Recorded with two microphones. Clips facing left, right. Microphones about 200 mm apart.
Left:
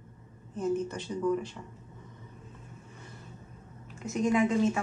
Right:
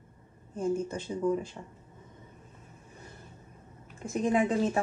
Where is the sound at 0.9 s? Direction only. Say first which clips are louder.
Even; 25° right (ahead or behind).